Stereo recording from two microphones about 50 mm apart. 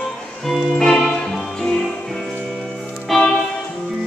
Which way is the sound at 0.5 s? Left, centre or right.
Centre.